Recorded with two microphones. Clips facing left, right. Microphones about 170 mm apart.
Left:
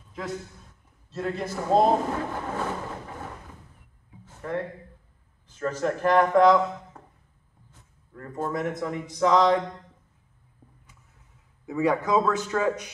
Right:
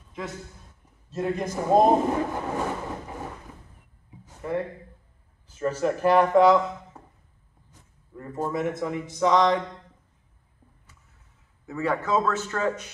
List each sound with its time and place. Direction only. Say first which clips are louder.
1.1 s a man's voice: right 2 dB; 15° right (ahead or behind)
4.4 s a man's voice: right 2 dB; 10° right (ahead or behind)
8.1 s a man's voice: right 1 dB; 10° right (ahead or behind)
11.6 s a man's voice: left 3 dB; 10° left (ahead or behind)